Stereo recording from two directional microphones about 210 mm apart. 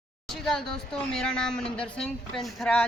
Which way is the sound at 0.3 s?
Centre (ahead or behind).